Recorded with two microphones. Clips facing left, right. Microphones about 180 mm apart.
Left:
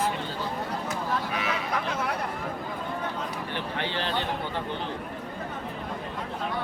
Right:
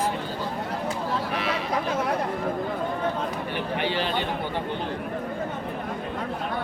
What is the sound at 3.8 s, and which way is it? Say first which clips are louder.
Speech: right 4 dB; 15° right (ahead or behind).